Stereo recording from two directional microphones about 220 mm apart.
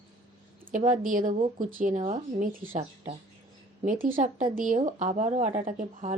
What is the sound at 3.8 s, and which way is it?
Speech, 40° right (ahead or behind).